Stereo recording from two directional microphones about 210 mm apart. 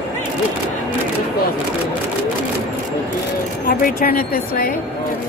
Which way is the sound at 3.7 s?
45° left (ahead or behind).